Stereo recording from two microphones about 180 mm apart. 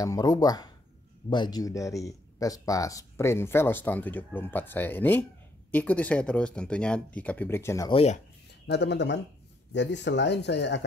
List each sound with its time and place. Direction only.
0.0 s speech: 20° left (ahead or behind)
7.9 s speech: 35° left (ahead or behind)
8.6 s speech: 75° left (ahead or behind)